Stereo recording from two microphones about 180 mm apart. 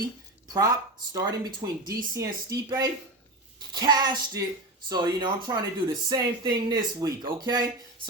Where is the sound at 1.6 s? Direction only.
20° right (ahead or behind).